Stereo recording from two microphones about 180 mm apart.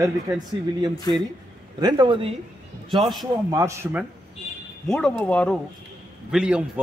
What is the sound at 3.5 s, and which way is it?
Speech, 15° right (ahead or behind).